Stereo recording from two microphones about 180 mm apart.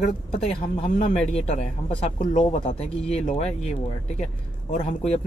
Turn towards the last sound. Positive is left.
turn(degrees=40)  # may be behind; listen again after turning